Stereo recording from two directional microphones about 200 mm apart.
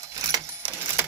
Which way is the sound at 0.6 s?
10° right (ahead or behind).